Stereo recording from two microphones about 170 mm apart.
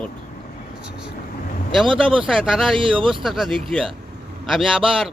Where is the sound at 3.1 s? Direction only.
Centre (ahead or behind).